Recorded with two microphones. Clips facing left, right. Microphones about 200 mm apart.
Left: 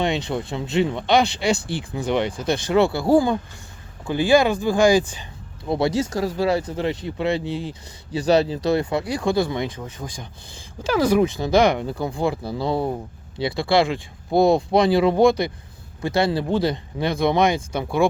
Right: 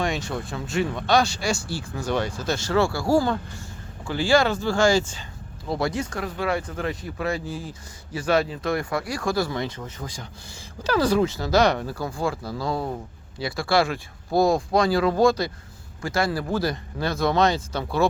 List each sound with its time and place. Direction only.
0.0 s speech: 20° left (ahead or behind)
6.1 s speech: 35° left (ahead or behind); by 18.1 s 15° left (ahead or behind)